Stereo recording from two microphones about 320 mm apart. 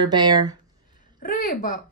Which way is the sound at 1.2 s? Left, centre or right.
Left.